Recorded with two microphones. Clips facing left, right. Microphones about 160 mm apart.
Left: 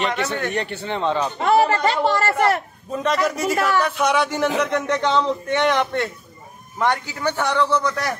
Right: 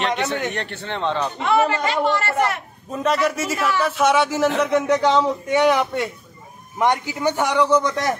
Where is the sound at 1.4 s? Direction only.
40° left (ahead or behind).